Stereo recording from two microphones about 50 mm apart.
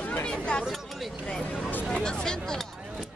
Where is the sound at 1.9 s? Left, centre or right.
Centre.